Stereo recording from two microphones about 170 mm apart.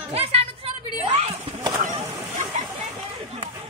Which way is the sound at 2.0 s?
15° right (ahead or behind).